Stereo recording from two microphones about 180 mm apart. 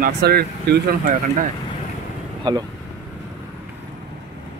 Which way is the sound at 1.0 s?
45° right (ahead or behind).